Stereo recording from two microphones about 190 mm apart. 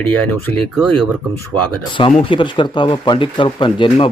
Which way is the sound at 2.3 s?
25° left (ahead or behind).